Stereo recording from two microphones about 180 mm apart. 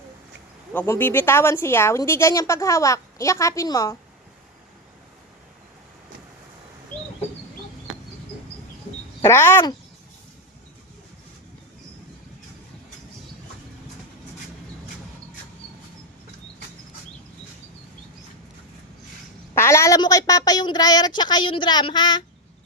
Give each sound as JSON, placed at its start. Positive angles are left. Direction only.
{"t": 0.7, "sound": "speech", "side_deg": 10}
{"t": 9.2, "sound": "speech", "side_deg": 15}
{"t": 19.5, "sound": "a woman's voice", "side_deg": 15}